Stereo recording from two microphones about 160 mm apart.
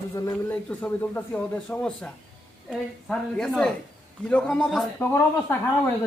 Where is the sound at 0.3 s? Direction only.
10° left (ahead or behind).